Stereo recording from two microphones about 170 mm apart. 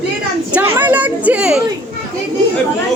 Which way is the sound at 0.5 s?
10° right (ahead or behind).